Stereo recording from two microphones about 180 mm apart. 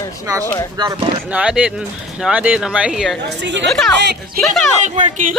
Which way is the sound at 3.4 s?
75° right (ahead or behind).